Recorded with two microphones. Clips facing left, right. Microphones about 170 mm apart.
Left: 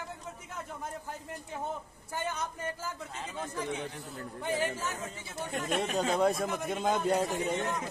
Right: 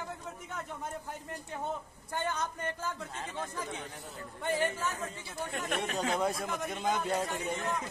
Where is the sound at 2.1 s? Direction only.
5° left (ahead or behind).